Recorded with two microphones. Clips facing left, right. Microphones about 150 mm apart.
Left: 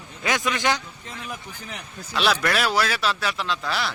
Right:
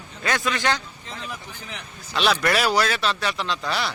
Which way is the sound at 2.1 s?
5° left (ahead or behind).